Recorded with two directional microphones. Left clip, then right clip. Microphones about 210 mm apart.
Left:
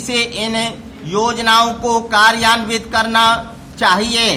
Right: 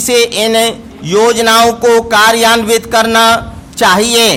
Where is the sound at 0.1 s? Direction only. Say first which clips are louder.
Right 8 dB; 50° right (ahead or behind).